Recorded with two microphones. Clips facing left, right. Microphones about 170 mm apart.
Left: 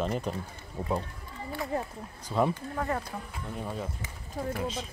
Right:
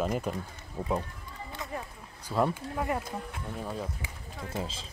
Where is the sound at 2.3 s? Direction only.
5° right (ahead or behind).